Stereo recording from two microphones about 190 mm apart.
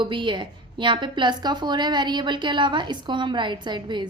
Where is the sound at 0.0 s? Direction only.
25° right (ahead or behind).